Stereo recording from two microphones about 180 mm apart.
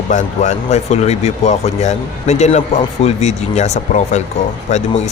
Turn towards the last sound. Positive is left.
turn(degrees=40)  # may be behind; listen again after turning